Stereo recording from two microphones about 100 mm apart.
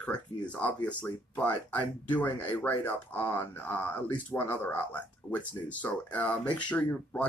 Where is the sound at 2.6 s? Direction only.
20° left (ahead or behind).